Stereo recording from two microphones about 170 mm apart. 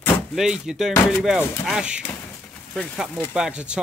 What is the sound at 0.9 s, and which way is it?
Speech, 15° left (ahead or behind).